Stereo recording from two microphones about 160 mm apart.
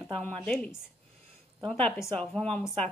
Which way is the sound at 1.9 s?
15° left (ahead or behind).